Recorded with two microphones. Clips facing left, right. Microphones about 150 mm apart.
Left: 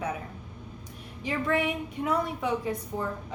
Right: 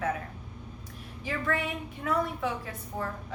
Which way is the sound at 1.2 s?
20° left (ahead or behind).